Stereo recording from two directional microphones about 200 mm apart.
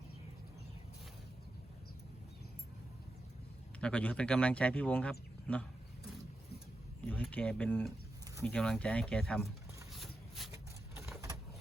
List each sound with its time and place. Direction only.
3.8 s speech: 5° left (ahead or behind)
7.1 s speech: 5° left (ahead or behind)
9.9 s a sound: centre (ahead or behind)